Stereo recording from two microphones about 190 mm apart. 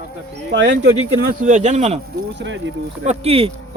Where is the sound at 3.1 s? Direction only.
30° right (ahead or behind).